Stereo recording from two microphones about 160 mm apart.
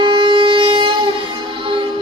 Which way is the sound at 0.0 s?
30° right (ahead or behind).